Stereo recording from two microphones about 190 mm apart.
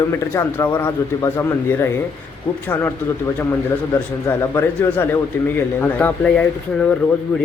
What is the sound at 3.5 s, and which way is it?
A man's voice, 15° left (ahead or behind).